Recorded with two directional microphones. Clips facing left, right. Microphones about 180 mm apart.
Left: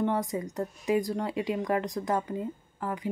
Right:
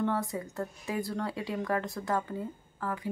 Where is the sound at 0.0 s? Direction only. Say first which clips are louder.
Left 3 dB; 20° left (ahead or behind).